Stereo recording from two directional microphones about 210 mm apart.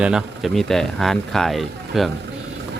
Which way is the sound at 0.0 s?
5° right (ahead or behind).